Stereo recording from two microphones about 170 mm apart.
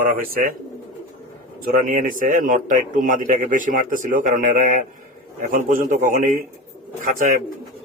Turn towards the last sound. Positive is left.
turn(degrees=-50)  # may be behind; listen again after turning